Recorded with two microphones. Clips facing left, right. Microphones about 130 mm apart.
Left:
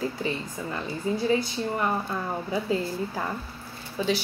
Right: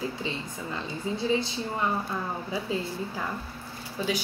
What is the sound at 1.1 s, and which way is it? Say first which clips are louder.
Speech: left 5 dB; 20° right (ahead or behind).